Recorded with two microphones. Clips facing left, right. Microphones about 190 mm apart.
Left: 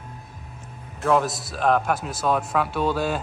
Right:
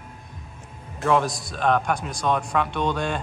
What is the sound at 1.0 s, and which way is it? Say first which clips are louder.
A man's voice: even; centre (ahead or behind).